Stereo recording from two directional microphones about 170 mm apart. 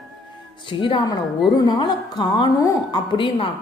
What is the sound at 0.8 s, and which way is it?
A woman's voice, 30° left (ahead or behind).